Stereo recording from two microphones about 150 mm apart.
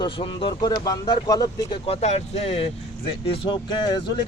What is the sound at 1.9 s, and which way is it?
A man's voice, 45° left (ahead or behind).